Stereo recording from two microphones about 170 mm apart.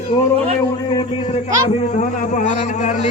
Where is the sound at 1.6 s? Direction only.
45° left (ahead or behind).